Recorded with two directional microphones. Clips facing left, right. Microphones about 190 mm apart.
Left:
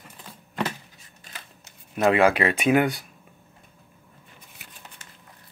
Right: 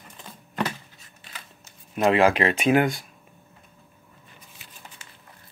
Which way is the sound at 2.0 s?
30° right (ahead or behind).